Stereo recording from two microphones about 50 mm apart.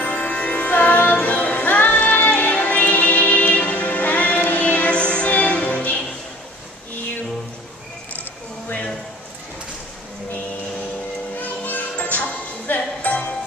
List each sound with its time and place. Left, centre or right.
0.0 s music: left
8.6 s a sound: left
11.3 s music: left